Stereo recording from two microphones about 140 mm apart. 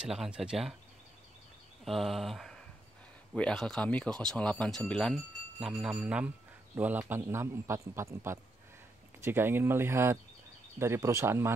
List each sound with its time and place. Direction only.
0.0 s speech: 5° right (ahead or behind)
1.9 s a man's voice: centre (ahead or behind); by 11.5 s 15° right (ahead or behind)